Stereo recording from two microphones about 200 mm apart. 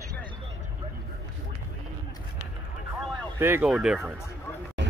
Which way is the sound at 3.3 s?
10° right (ahead or behind).